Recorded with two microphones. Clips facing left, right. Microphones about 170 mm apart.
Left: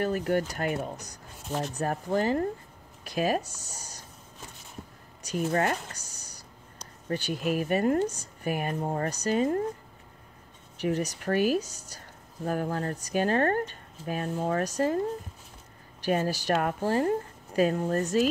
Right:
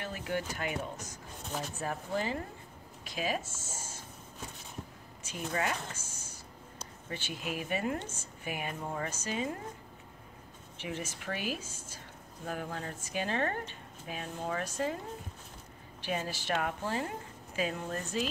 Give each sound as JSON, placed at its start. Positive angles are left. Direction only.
{"t": 0.0, "sound": "speech", "side_deg": 45}
{"t": 5.3, "sound": "speech", "side_deg": 50}
{"t": 10.8, "sound": "speech", "side_deg": 40}
{"t": 16.0, "sound": "speech", "side_deg": 45}